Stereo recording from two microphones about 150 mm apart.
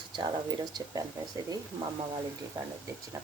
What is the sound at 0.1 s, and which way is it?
Speech, 30° right (ahead or behind).